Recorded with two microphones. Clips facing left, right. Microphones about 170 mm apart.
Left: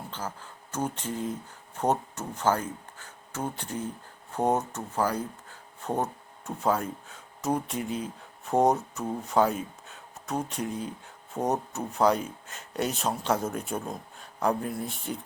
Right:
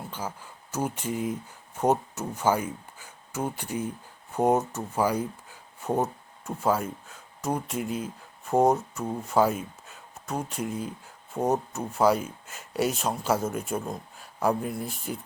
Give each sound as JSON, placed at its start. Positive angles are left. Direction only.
{"t": 0.1, "sound": "speech", "side_deg": -10}